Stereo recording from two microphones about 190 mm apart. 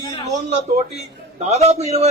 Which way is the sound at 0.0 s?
25° left (ahead or behind).